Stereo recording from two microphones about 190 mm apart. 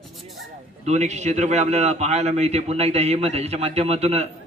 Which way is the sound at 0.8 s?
35° right (ahead or behind).